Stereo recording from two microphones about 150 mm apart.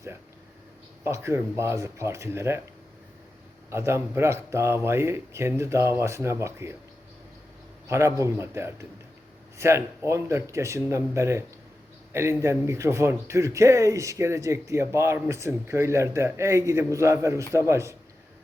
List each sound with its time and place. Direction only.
1.0 s speech: 15° right (ahead or behind)
3.7 s speech: 15° right (ahead or behind)
7.9 s a man's voice: 20° right (ahead or behind)